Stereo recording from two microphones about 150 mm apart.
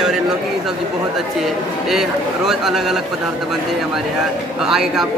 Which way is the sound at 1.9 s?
Centre (ahead or behind).